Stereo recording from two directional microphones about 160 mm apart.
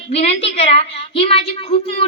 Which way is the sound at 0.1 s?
40° left (ahead or behind).